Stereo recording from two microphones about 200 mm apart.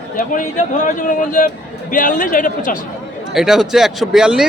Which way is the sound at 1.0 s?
40° left (ahead or behind).